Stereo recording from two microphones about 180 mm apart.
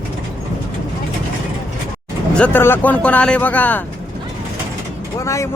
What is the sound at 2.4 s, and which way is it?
Speech, 10° left (ahead or behind).